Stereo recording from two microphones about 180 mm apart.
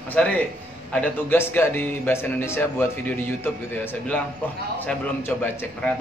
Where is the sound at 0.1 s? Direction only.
10° left (ahead or behind).